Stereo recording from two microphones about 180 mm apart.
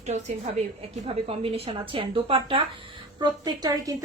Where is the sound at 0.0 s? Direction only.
40° right (ahead or behind).